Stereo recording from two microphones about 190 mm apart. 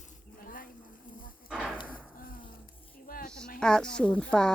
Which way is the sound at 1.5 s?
Centre (ahead or behind).